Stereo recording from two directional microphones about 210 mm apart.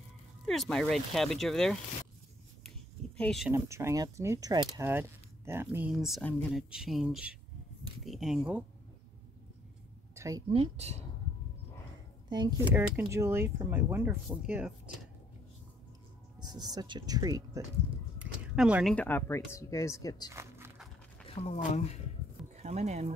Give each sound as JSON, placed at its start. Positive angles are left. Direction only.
{"t": 0.5, "sound": "speech", "side_deg": 0}
{"t": 3.2, "sound": "speech", "side_deg": 0}
{"t": 3.5, "sound": "speech", "side_deg": -15}
{"t": 10.1, "sound": "a sound", "side_deg": -15}
{"t": 10.5, "sound": "speech", "side_deg": -30}
{"t": 12.3, "sound": "speech", "side_deg": -20}
{"t": 16.3, "sound": "speech", "side_deg": -20}
{"t": 18.2, "sound": "a sound", "side_deg": -5}
{"t": 18.9, "sound": "speech", "side_deg": 10}
{"t": 20.3, "sound": "a sound", "side_deg": -10}
{"t": 21.4, "sound": "speech", "side_deg": 30}
{"t": 22.6, "sound": "speech", "side_deg": -30}